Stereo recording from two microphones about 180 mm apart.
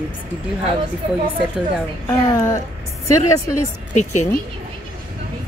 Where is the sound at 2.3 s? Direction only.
20° left (ahead or behind).